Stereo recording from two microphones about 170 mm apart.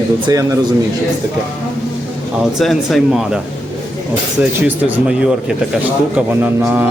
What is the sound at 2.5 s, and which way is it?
Speech, centre (ahead or behind).